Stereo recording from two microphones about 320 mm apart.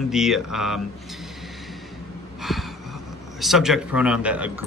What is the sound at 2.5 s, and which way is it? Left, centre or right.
A man's voice, centre.